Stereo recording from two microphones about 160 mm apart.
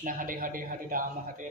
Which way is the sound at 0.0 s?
60° right (ahead or behind).